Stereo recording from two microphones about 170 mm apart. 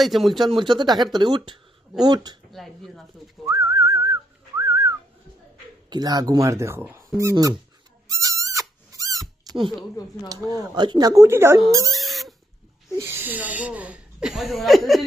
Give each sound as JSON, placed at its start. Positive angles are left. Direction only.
{"t": 0.0, "sound": "speech", "side_deg": 0}
{"t": 0.8, "sound": "speech", "side_deg": -25}
{"t": 2.5, "sound": "speech", "side_deg": 0}
{"t": 3.4, "sound": "whistling", "side_deg": -20}
{"t": 5.9, "sound": "speech", "side_deg": -25}
{"t": 8.1, "sound": "owl", "side_deg": -20}
{"t": 8.9, "sound": "squeak", "side_deg": -20}
{"t": 10.0, "sound": "speech", "side_deg": 20}
{"t": 10.5, "sound": "speech", "side_deg": -25}
{"t": 11.9, "sound": "a sound", "side_deg": 0}
{"t": 13.0, "sound": "speech", "side_deg": -15}